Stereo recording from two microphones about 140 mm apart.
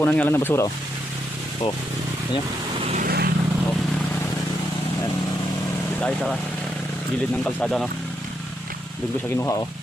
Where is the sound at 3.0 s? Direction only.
90° right.